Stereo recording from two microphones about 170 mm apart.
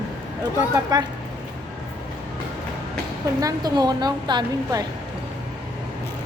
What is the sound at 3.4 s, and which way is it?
A woman's voice, 20° right (ahead or behind).